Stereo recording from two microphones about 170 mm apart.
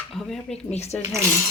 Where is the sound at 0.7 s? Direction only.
40° left (ahead or behind).